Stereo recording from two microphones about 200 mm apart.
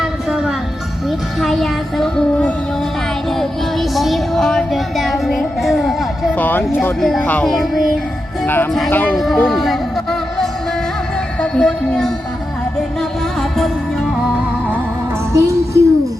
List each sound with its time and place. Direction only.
0.0 s music: centre (ahead or behind)
1.4 s child singing: centre (ahead or behind)
3.2 s music: centre (ahead or behind)
8.4 s a woman's voice: 5° left (ahead or behind)
15.3 s music: 15° right (ahead or behind)